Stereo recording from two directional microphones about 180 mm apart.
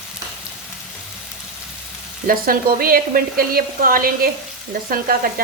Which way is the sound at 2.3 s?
55° right (ahead or behind).